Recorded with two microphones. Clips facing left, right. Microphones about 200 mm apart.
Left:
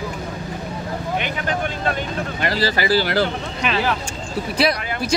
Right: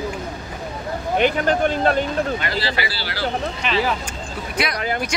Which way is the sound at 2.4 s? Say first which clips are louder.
Left 4 dB; 40° left (ahead or behind).